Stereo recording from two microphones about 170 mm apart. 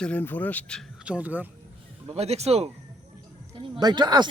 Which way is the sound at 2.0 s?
40° right (ahead or behind).